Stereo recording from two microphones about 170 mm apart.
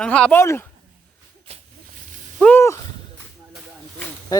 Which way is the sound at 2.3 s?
5° left (ahead or behind).